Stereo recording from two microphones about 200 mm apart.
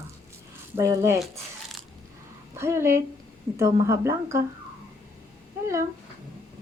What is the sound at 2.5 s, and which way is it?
A woman's voice, 10° right (ahead or behind).